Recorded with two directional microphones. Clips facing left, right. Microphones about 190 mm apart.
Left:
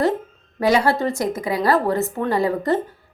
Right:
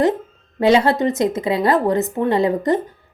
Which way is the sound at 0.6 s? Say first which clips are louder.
Right 3 dB; 25° right (ahead or behind).